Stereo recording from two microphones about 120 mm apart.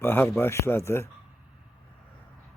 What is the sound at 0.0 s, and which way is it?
Speech, 20° left (ahead or behind).